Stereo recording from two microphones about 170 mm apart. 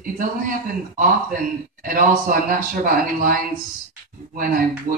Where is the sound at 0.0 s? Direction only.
55° right (ahead or behind).